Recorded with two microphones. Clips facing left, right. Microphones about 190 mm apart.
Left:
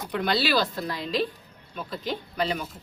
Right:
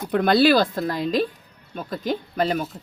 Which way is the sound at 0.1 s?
50° right (ahead or behind).